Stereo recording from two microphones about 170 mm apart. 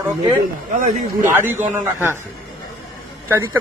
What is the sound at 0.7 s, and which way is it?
Speech, 50° right (ahead or behind).